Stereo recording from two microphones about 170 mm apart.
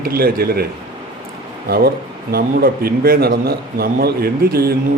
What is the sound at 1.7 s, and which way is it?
A man's voice, 65° right (ahead or behind).